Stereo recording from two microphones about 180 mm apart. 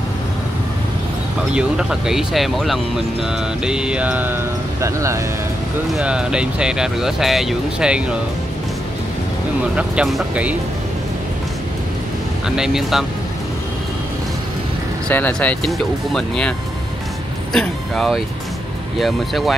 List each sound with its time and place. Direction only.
1.5 s speech: 5° right (ahead or behind)
3.6 s mantra: 5° right (ahead or behind)
5.9 s speech: 5° right (ahead or behind)
9.8 s mantra: 5° right (ahead or behind)
12.4 s speech: 5° right (ahead or behind)
15.0 s speech: 10° left (ahead or behind)